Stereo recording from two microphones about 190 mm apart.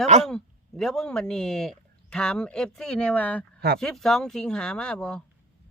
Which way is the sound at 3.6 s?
55° right (ahead or behind).